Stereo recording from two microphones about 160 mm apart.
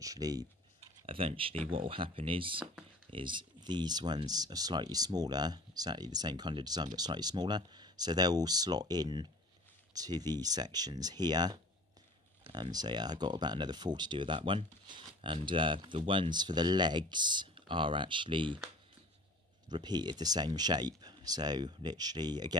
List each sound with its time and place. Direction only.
0.0 s speech: 20° right (ahead or behind)
0.7 s speech: 35° right (ahead or behind)
19.7 s speech: 25° right (ahead or behind)